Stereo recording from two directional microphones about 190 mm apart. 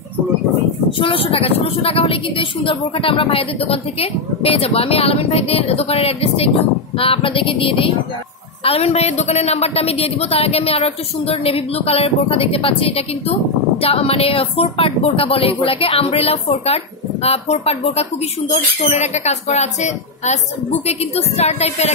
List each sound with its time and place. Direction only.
0.9 s a woman's voice: 30° left (ahead or behind)
7.0 s a sound: 30° left (ahead or behind)
8.6 s a woman's voice: 30° left (ahead or behind)